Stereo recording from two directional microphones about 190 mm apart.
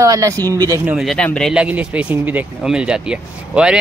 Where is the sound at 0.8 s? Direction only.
5° right (ahead or behind).